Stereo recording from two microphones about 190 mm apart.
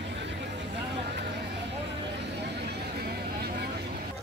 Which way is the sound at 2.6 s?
55° right (ahead or behind).